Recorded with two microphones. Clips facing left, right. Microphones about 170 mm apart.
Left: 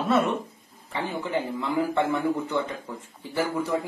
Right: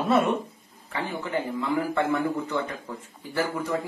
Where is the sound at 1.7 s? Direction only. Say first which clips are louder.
Left 1 dB; 20° left (ahead or behind).